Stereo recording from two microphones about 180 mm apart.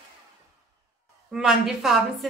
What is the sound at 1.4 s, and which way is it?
Speech, 5° right (ahead or behind).